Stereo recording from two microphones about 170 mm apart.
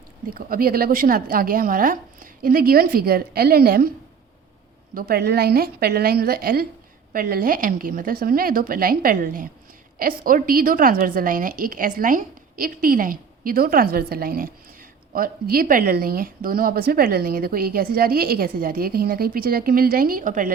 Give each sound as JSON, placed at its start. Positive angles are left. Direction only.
{"t": 0.3, "sound": "a woman's voice", "side_deg": -60}
{"t": 4.9, "sound": "a woman's voice", "side_deg": -60}